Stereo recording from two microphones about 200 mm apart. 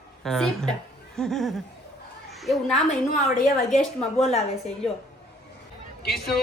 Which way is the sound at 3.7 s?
35° left (ahead or behind).